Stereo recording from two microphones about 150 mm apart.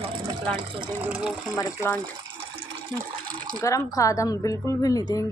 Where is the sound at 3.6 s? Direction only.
20° left (ahead or behind).